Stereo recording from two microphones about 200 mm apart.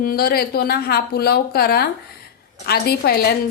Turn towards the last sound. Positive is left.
turn(degrees=55)  # may be behind; listen again after turning